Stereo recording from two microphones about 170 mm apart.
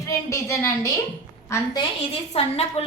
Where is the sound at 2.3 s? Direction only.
35° left (ahead or behind).